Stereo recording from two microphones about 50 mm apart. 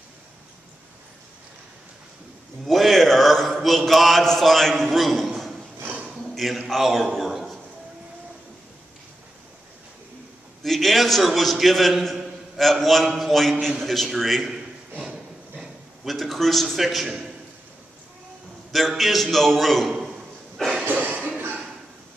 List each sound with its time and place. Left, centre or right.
2.6 s mantra: centre
4.2 s a man's voice: centre
10.6 s a man's voice: centre
15.6 s a man's voice: centre
18.7 s a man's voice: centre
20.6 s cough: centre
20.9 s a sound: right